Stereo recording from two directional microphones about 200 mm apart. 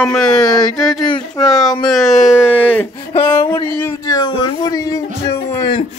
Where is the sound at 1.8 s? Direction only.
Centre (ahead or behind).